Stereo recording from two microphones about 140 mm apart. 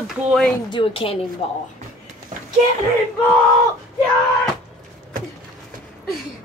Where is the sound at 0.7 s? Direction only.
40° left (ahead or behind).